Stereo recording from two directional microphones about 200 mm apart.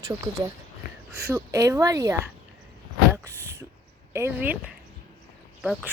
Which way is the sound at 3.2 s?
15° right (ahead or behind).